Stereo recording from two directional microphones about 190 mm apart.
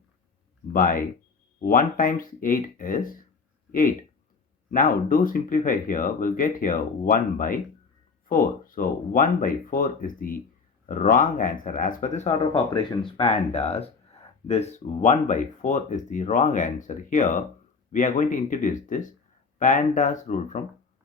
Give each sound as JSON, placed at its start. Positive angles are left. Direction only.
{"t": 0.7, "sound": "speech", "side_deg": 45}
{"t": 12.7, "sound": "speech", "side_deg": 25}